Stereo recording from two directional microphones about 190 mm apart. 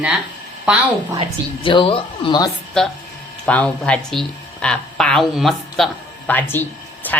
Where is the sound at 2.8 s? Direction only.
5° left (ahead or behind).